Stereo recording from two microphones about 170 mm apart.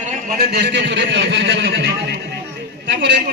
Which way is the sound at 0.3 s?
75° right (ahead or behind).